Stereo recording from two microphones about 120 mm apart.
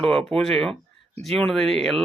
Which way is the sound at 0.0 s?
5° left (ahead or behind).